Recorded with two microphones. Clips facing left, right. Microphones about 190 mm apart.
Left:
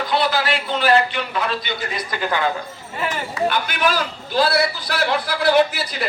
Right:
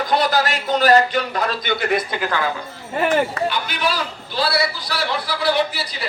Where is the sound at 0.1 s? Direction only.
45° right (ahead or behind).